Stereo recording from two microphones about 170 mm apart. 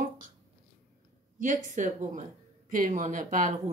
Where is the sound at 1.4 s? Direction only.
50° right (ahead or behind).